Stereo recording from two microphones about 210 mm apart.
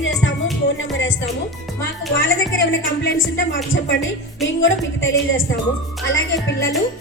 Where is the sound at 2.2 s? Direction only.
65° left (ahead or behind).